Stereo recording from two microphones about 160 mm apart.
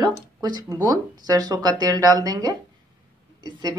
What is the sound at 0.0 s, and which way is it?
Speech, 25° right (ahead or behind).